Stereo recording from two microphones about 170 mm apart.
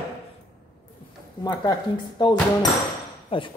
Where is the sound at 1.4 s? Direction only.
25° left (ahead or behind).